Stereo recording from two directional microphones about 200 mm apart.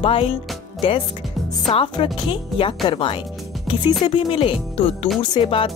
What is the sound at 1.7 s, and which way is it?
Speech, 25° left (ahead or behind).